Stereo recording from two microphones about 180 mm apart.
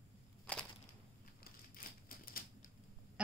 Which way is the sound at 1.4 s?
55° left (ahead or behind).